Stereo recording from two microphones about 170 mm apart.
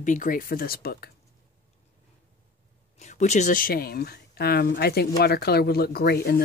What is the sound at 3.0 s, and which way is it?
Speech, 45° left (ahead or behind).